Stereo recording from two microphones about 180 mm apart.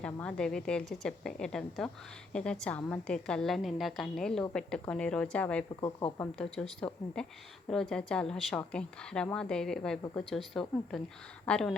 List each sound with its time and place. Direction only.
0.0 s speech: 5° left (ahead or behind)
5.8 s speech: 30° left (ahead or behind)
6.1 s speech: 5° left (ahead or behind)